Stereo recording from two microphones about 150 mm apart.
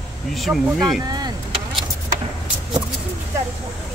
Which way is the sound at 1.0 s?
25° right (ahead or behind).